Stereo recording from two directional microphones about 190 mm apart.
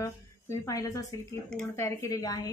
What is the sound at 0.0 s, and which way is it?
Speech, 15° left (ahead or behind).